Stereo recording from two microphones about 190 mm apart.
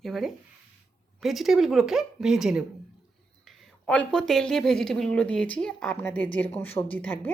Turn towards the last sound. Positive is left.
turn(degrees=10)  # may be behind; listen again after turning